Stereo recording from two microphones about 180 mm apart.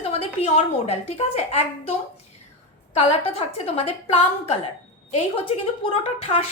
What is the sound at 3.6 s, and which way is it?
Speech, 35° left (ahead or behind).